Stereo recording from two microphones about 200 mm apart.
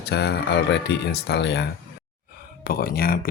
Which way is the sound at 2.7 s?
50° left (ahead or behind).